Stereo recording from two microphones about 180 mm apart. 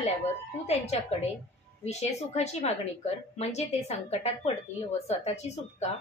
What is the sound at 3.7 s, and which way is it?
Speech, 35° left (ahead or behind).